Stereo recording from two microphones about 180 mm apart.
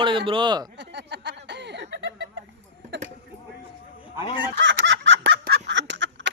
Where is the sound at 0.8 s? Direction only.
70° right (ahead or behind).